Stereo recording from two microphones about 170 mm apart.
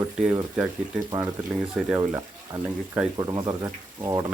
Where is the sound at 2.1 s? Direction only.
15° right (ahead or behind).